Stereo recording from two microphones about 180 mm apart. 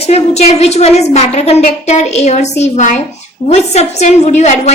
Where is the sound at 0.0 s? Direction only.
35° left (ahead or behind).